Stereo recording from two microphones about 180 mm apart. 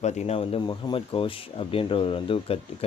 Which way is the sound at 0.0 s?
40° left (ahead or behind).